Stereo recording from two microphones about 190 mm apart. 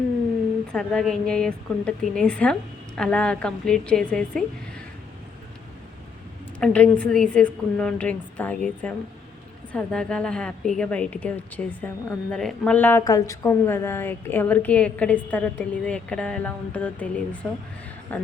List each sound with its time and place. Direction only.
0.7 s a woman's voice: 5° left (ahead or behind)
6.6 s a woman's voice: 5° left (ahead or behind)